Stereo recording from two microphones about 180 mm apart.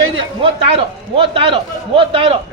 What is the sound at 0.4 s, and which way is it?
A man's voice, 30° right (ahead or behind).